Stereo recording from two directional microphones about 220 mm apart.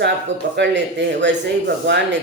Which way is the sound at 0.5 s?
55° right (ahead or behind).